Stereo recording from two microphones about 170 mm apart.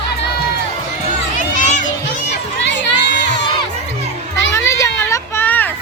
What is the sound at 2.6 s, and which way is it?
Crowd, 90° left.